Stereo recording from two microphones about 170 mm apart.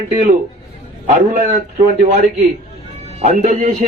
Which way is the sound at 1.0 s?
55° right (ahead or behind).